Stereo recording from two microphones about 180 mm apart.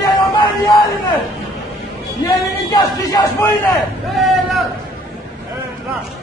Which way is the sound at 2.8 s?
15° left (ahead or behind).